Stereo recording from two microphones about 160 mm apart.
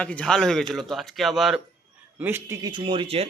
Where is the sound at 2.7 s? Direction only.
35° right (ahead or behind).